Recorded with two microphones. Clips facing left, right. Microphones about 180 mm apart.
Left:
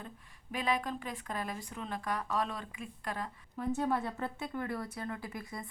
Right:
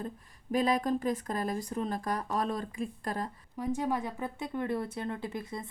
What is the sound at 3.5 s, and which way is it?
A woman's voice, 15° right (ahead or behind).